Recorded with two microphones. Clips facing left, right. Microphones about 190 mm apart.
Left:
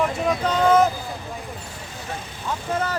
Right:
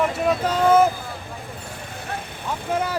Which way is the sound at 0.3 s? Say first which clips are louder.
Right 1 dB; 5° right (ahead or behind).